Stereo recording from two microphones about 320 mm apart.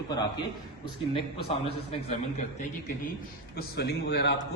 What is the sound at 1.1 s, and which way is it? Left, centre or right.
Speech, centre.